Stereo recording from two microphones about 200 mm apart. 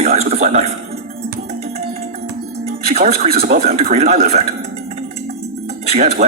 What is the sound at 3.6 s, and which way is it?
Speech, 30° right (ahead or behind).